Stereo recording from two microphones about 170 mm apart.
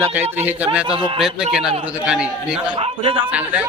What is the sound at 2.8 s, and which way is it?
Speech, 35° right (ahead or behind).